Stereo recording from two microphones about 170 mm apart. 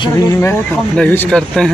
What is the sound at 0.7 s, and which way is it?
Speech, 10° left (ahead or behind).